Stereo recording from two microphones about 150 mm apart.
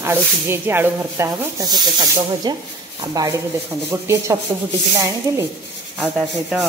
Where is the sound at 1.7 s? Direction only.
25° right (ahead or behind).